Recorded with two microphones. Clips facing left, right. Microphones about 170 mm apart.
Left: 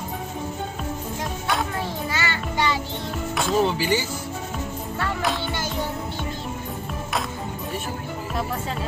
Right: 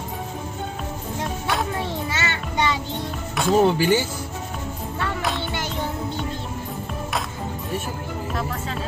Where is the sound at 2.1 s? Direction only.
20° right (ahead or behind).